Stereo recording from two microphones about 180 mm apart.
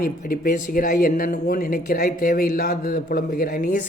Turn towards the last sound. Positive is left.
turn(degrees=60)  # may be behind; listen again after turning